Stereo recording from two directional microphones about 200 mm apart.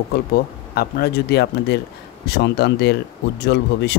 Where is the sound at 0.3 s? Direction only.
50° left (ahead or behind).